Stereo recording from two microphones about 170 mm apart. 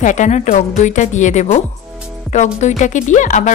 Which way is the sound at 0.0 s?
45° left (ahead or behind).